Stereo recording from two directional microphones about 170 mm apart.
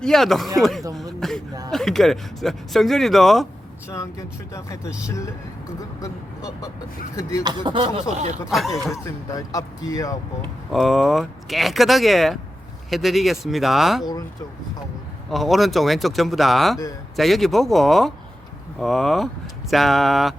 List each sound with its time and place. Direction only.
0.0 s speech: centre (ahead or behind)
1.2 s a sound: centre (ahead or behind)
1.7 s speech: centre (ahead or behind)
3.8 s speech: 15° left (ahead or behind)
7.4 s speech: 25° right (ahead or behind)
8.1 s speech: 40° right (ahead or behind)
8.4 s speech: centre (ahead or behind)
9.0 s speech: 20° left (ahead or behind)
10.7 s speech: centre (ahead or behind)
14.0 s speech: 25° left (ahead or behind)
15.3 s speech: centre (ahead or behind)